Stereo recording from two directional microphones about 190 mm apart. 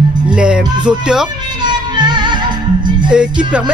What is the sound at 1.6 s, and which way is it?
Music, 20° right (ahead or behind).